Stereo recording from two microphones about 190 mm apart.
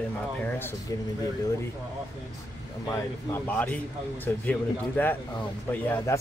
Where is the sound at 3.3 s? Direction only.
10° left (ahead or behind).